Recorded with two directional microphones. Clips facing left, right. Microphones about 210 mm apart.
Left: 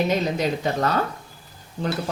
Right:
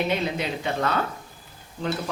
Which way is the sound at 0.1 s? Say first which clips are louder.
Left 4 dB; 40° left (ahead or behind).